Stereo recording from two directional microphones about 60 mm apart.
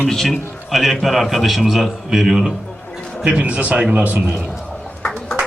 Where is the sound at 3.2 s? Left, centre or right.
Centre.